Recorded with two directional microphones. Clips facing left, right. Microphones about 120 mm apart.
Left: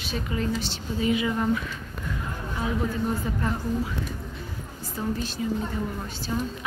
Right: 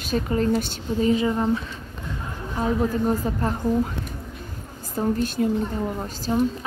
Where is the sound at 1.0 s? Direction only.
35° right (ahead or behind).